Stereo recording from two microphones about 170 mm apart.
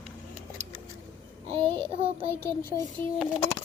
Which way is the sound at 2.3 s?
15° left (ahead or behind).